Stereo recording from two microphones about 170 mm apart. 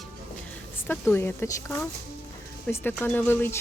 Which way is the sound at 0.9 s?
10° left (ahead or behind).